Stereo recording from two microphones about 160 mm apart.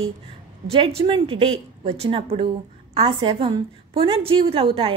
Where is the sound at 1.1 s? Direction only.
35° right (ahead or behind).